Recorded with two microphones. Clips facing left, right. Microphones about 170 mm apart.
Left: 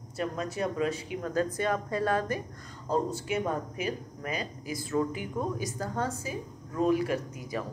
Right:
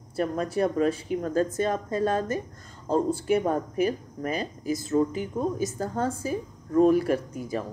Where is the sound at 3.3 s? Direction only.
40° right (ahead or behind).